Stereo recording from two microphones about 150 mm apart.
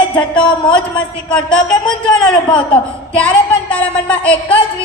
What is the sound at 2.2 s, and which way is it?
Speech, 5° left (ahead or behind).